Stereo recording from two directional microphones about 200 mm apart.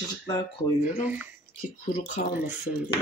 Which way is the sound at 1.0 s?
5° right (ahead or behind).